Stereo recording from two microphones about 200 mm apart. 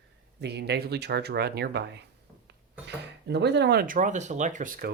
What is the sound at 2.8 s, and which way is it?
Speech, 55° right (ahead or behind).